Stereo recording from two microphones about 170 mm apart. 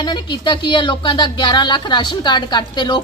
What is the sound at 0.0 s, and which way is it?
Speech, 25° left (ahead or behind).